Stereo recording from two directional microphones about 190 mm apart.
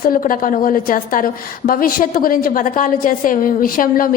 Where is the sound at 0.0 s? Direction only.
45° left (ahead or behind).